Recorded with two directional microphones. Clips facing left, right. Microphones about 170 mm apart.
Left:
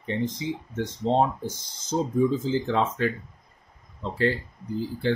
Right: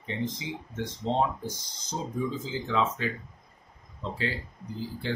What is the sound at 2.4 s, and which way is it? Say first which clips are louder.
Speech: left 4 dB; 50° left (ahead or behind).